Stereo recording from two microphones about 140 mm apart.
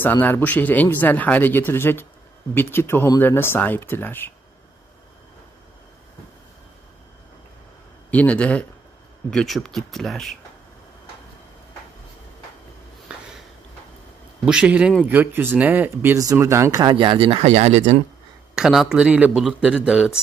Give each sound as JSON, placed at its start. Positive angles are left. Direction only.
{"t": 0.0, "sound": "speech", "side_deg": 15}
{"t": 8.1, "sound": "a man's voice", "side_deg": 10}
{"t": 14.4, "sound": "speech", "side_deg": -5}
{"t": 17.5, "sound": "speech", "side_deg": -55}
{"t": 18.5, "sound": "a man's voice", "side_deg": -5}